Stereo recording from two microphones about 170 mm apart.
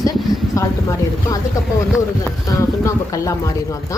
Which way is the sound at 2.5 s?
20° left (ahead or behind).